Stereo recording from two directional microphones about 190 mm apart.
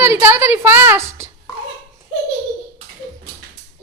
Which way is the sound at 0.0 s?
10° right (ahead or behind).